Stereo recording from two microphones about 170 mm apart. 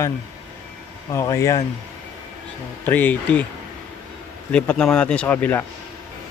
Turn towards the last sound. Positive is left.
turn(degrees=10)  # may be behind; listen again after turning